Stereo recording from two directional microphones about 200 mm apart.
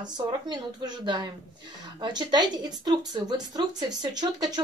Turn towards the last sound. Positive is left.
turn(degrees=-20)  # may be behind; listen again after turning